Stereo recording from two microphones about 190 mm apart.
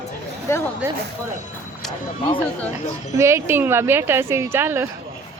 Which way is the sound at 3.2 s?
15° right (ahead or behind).